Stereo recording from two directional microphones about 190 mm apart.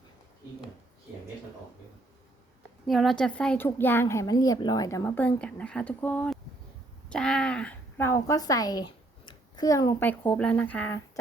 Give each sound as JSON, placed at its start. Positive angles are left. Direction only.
{"t": 2.8, "sound": "a woman's voice", "side_deg": 0}